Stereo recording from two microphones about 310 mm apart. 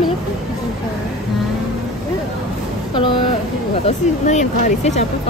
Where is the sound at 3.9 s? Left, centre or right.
Left.